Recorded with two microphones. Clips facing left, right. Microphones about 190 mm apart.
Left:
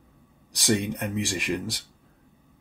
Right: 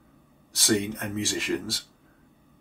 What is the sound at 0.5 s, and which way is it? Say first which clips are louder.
Speech: even; 15° left (ahead or behind).